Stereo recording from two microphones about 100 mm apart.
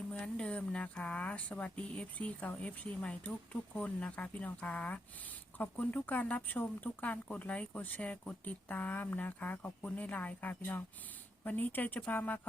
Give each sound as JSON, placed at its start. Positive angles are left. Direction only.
{"t": 0.1, "sound": "speech", "side_deg": 10}